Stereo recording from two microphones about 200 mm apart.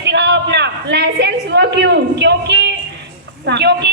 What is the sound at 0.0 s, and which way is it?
A woman's voice, 60° right (ahead or behind).